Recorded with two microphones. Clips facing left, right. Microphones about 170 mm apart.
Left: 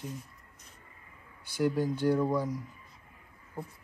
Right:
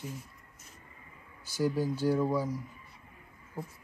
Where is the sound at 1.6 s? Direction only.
5° right (ahead or behind).